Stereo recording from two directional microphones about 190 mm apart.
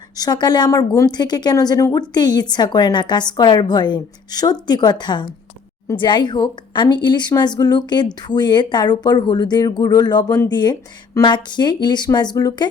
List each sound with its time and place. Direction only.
0.2 s speech: 20° left (ahead or behind)